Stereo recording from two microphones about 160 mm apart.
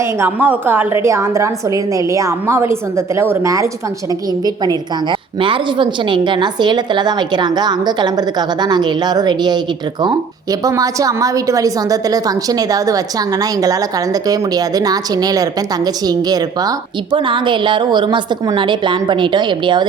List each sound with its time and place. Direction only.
0.0 s a woman's voice: 15° right (ahead or behind); by 19.9 s 30° right (ahead or behind)